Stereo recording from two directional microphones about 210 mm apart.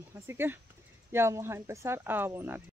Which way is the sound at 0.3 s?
10° right (ahead or behind).